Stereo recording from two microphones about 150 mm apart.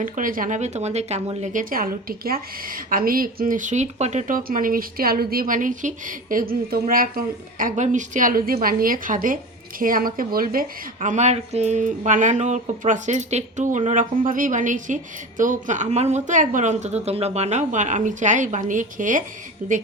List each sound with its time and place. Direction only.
0.0 s speech: 65° right (ahead or behind); by 1.6 s 45° right (ahead or behind)
1.7 s a woman's voice: 75° right (ahead or behind)